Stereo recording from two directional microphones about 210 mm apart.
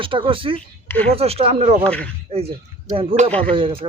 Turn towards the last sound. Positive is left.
turn(degrees=-25)  # may be behind; listen again after turning